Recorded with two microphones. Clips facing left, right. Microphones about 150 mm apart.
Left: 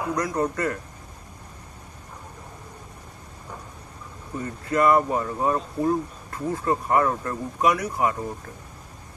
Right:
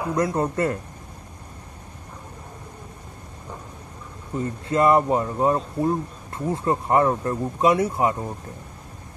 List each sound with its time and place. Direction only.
0.1 s speech: 25° right (ahead or behind)
4.4 s speech: 25° right (ahead or behind)